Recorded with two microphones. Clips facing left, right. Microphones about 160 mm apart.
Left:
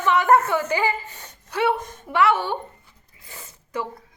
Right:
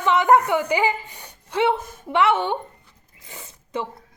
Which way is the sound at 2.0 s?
20° right (ahead or behind).